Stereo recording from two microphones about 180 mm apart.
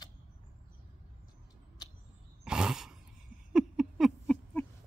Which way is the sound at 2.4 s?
5° right (ahead or behind).